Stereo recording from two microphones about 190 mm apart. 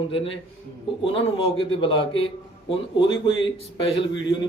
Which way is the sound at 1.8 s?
25° left (ahead or behind).